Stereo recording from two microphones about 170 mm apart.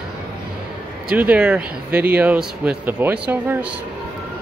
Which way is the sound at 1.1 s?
10° right (ahead or behind).